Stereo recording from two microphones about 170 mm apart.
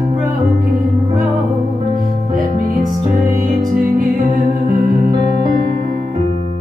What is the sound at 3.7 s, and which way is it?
Music, 55° right (ahead or behind).